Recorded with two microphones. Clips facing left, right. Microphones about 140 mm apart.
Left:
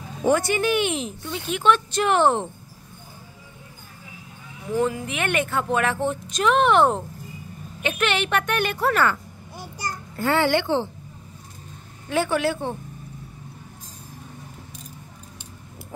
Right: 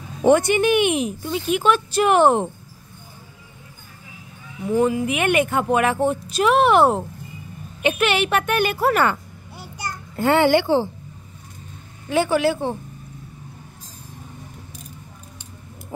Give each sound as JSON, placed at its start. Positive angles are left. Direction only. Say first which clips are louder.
{"t": 0.2, "sound": "speech", "louder": "right 5 dB", "side_deg": -20}
{"t": 4.7, "sound": "speech", "louder": "right 4 dB", "side_deg": -10}
{"t": 10.1, "sound": "a child's voice", "louder": "right 5 dB", "side_deg": -20}
{"t": 10.5, "sound": "speech", "louder": "right 4 dB", "side_deg": -10}
{"t": 12.1, "sound": "speech", "louder": "right 4 dB", "side_deg": 0}